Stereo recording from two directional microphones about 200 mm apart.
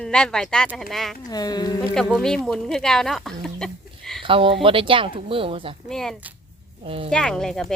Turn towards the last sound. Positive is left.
turn(degrees=5)  # may be behind; listen again after turning